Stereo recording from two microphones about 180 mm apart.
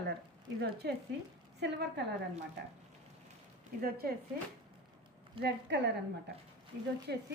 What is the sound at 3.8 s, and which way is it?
Speech, 55° right (ahead or behind).